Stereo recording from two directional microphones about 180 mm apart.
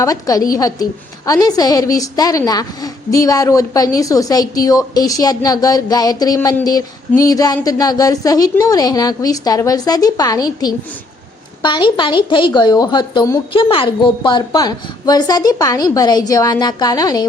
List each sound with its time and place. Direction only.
0.0 s a woman's voice: 20° left (ahead or behind)